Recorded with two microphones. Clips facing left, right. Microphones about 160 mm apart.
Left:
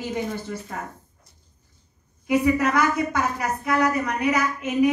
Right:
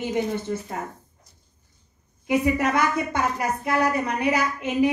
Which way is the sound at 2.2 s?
25° right (ahead or behind).